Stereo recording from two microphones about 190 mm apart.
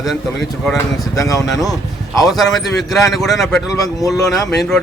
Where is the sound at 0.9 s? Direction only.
20° left (ahead or behind).